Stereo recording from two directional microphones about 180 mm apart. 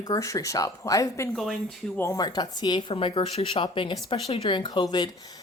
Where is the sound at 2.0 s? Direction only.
20° left (ahead or behind).